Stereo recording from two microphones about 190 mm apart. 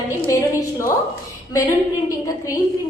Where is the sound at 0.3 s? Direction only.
15° left (ahead or behind).